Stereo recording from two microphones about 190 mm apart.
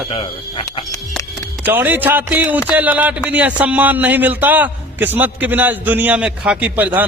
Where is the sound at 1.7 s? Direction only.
10° right (ahead or behind).